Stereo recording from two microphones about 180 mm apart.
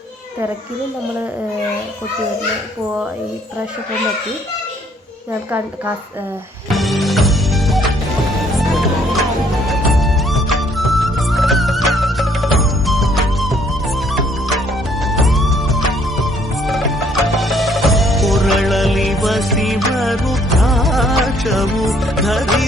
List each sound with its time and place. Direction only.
6.7 s music: centre (ahead or behind)
17.2 s music: centre (ahead or behind)